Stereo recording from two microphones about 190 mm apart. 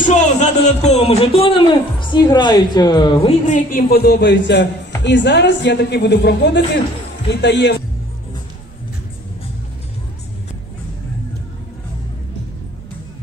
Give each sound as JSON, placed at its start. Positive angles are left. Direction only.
{"t": 0.0, "sound": "a man's voice", "side_deg": 40}